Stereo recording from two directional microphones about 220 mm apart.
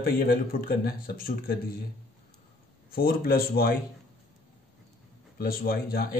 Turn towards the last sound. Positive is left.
turn(degrees=40)  # may be behind; listen again after turning